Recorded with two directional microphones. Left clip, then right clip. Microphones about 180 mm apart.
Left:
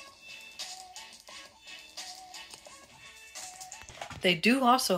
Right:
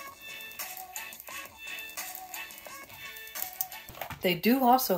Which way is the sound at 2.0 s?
45° right (ahead or behind).